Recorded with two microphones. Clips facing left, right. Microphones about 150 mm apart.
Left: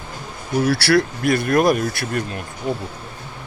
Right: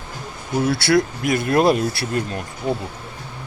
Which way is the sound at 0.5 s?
25° right (ahead or behind).